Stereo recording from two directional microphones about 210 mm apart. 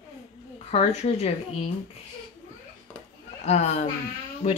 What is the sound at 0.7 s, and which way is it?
Speech, 30° left (ahead or behind).